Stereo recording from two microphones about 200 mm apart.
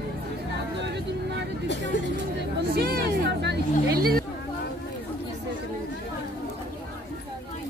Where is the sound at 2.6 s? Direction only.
50° right (ahead or behind).